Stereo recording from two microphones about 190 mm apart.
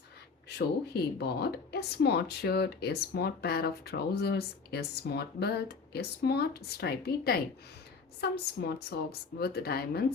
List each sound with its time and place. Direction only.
0.4 s a woman's voice: 55° left (ahead or behind)